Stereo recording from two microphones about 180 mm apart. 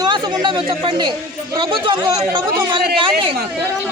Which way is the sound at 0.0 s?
25° right (ahead or behind).